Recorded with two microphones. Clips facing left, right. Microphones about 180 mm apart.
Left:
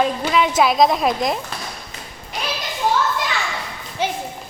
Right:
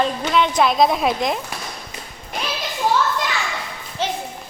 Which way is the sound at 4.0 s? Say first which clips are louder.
Left 1 dB; 15° left (ahead or behind).